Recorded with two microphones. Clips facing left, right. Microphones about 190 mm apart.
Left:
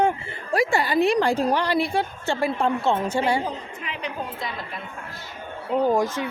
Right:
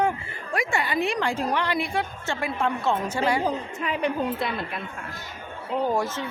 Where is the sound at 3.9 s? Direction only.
55° right (ahead or behind).